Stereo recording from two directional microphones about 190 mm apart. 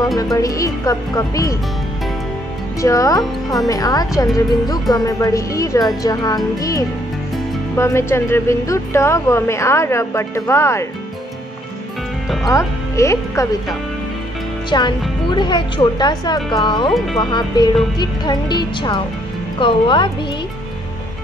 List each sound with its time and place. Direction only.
0.2 s speech: 20° left (ahead or behind)
2.8 s a woman's voice: 15° left (ahead or behind)
12.4 s speech: 15° left (ahead or behind)
14.7 s a woman's voice: 25° left (ahead or behind)